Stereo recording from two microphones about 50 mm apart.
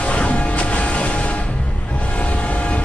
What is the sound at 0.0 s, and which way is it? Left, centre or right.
Music, left.